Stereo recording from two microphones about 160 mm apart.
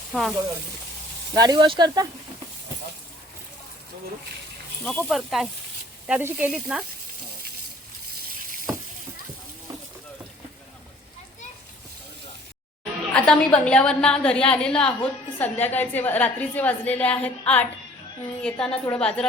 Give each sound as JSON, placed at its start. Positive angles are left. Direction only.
{"t": 0.1, "sound": "speech", "side_deg": 0}
{"t": 1.4, "sound": "speech", "side_deg": -25}
{"t": 4.8, "sound": "a woman's voice", "side_deg": 5}
{"t": 6.1, "sound": "a woman's voice", "side_deg": -10}
{"t": 12.8, "sound": "a woman's voice", "side_deg": 5}